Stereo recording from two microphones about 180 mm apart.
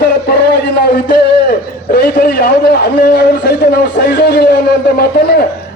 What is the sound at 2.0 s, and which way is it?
A man's voice, 65° left (ahead or behind).